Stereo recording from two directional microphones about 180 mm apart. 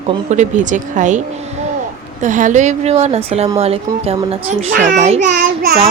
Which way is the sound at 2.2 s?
45° right (ahead or behind).